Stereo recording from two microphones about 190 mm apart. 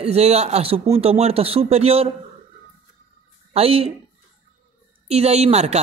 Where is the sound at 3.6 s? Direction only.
30° right (ahead or behind).